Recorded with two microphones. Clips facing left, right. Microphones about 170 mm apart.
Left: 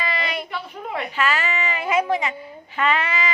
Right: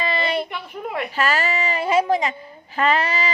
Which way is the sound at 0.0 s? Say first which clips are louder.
Right 4 dB; 30° right (ahead or behind).